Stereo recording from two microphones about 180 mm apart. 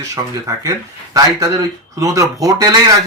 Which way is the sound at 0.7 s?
20° right (ahead or behind).